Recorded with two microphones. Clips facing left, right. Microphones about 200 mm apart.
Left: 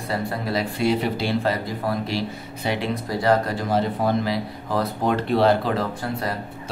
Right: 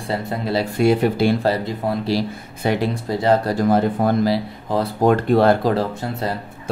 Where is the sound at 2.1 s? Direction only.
40° right (ahead or behind).